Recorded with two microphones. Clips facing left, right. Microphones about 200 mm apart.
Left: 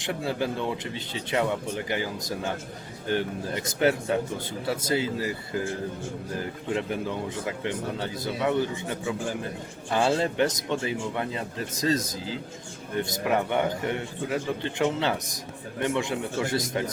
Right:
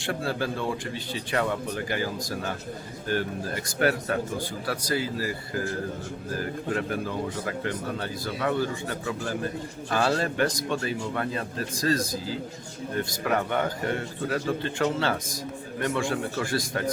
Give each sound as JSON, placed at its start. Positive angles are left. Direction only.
{"t": 0.0, "sound": "a man's voice", "side_deg": 20}
{"t": 3.1, "sound": "a man's voice", "side_deg": 20}